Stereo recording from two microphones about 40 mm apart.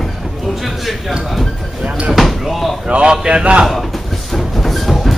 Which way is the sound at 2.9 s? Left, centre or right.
Right.